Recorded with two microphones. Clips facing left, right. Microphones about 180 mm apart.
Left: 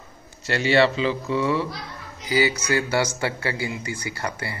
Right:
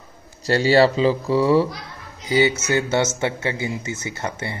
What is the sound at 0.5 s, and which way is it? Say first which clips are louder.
Speech: right 4 dB; 35° right (ahead or behind).